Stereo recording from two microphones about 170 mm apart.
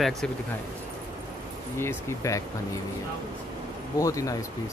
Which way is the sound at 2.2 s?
15° left (ahead or behind).